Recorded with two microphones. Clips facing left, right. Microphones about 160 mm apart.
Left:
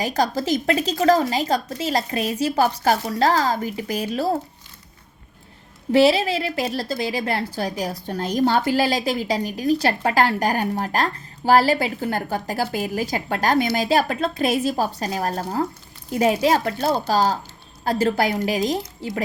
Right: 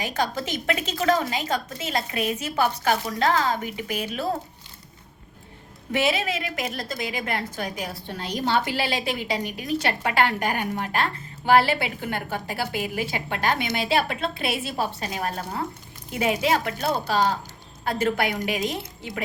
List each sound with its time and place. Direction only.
0.0 s a woman's voice: 35° left (ahead or behind)
5.9 s a woman's voice: 35° left (ahead or behind)